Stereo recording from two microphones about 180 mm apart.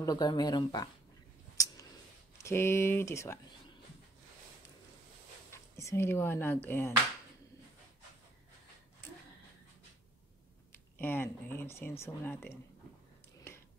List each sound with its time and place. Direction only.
0.0 s speech: 25° left (ahead or behind)
1.6 s a sound: 20° left (ahead or behind)
2.3 s speech: 15° left (ahead or behind)
5.5 s speech: 15° left (ahead or behind)
10.7 s speech: 10° left (ahead or behind)
13.5 s a sound: 15° left (ahead or behind)